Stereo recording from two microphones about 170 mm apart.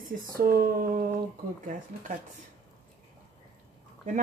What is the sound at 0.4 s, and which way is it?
Speech, 55° right (ahead or behind).